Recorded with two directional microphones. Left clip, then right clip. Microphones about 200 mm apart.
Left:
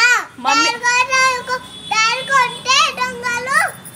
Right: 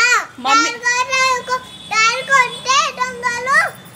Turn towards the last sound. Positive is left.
turn(degrees=-15)  # may be behind; listen again after turning